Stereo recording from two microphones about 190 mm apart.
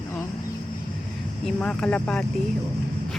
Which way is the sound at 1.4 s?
5° left (ahead or behind).